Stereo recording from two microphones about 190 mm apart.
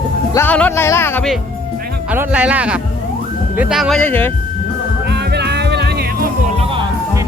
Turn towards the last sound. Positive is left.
turn(degrees=-30)  # may be behind; listen again after turning